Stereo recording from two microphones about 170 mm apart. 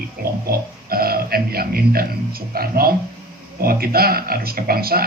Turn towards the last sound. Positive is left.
turn(degrees=-60)  # may be behind; listen again after turning